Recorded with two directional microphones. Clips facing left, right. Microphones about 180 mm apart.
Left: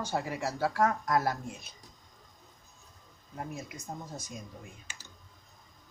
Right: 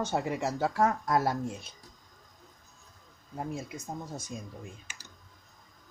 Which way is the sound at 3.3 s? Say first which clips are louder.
Right 4 dB; 25° right (ahead or behind).